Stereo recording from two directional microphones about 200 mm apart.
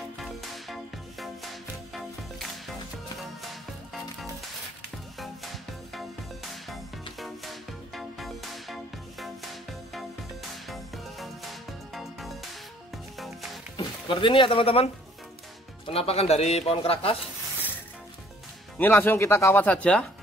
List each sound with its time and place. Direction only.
0.2 s music: centre (ahead or behind)
5.2 s music: centre (ahead or behind)
13.7 s speech: 25° left (ahead or behind)
15.9 s speech: 30° left (ahead or behind)
18.8 s speech: 10° left (ahead or behind)